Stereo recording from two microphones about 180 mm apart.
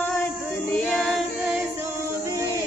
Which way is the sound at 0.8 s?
5° left (ahead or behind).